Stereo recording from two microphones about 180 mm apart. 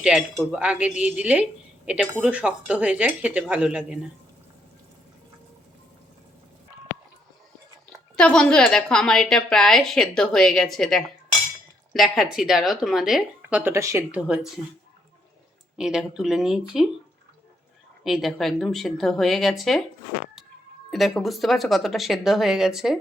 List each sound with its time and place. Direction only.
0.0 s a woman's voice: 5° right (ahead or behind)
8.1 s a woman's voice: 5° left (ahead or behind)
15.8 s a woman's voice: 5° right (ahead or behind)
18.0 s a woman's voice: centre (ahead or behind)
20.9 s a woman's voice: centre (ahead or behind)